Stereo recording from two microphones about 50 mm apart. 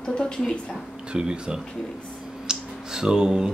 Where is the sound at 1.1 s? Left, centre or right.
Centre.